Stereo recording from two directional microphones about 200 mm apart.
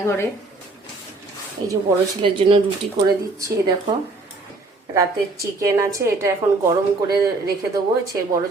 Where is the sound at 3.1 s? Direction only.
20° right (ahead or behind).